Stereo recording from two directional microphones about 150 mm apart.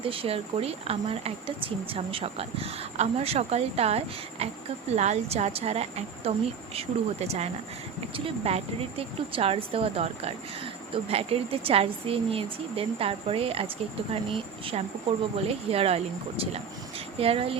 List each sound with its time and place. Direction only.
0.0 s a woman's voice: 40° right (ahead or behind)
17.2 s speech: 40° right (ahead or behind)